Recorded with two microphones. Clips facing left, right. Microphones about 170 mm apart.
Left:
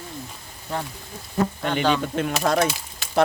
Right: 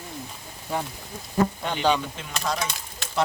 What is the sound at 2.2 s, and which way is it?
Speech, 60° left (ahead or behind).